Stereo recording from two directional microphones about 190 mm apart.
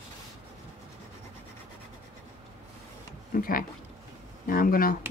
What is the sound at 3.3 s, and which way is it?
Speech, 50° left (ahead or behind).